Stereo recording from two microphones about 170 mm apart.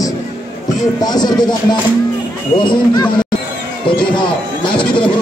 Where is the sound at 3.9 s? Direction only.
30° left (ahead or behind).